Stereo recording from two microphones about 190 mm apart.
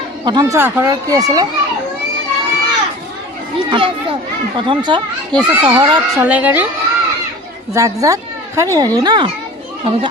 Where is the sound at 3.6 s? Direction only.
25° right (ahead or behind).